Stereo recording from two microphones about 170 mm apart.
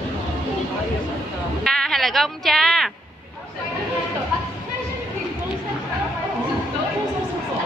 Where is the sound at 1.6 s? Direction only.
5° left (ahead or behind).